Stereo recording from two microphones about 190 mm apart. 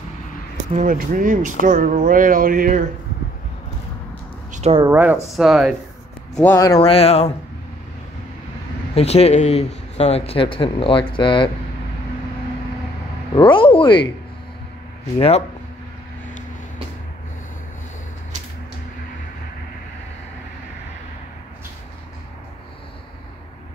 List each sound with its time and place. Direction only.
0.7 s speech: 45° right (ahead or behind)
4.5 s a sound: 35° right (ahead or behind)
4.8 s speech: 10° right (ahead or behind); by 6.6 s 10° left (ahead or behind)
6.8 s speech: 30° left (ahead or behind)
8.9 s speech: 35° left (ahead or behind)
13.3 s speech: 25° left (ahead or behind)
15.1 s speech: 30° left (ahead or behind)